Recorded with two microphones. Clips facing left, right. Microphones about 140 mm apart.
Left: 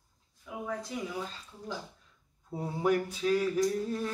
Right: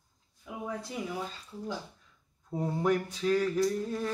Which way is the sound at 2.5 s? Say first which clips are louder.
Even; 5° left (ahead or behind).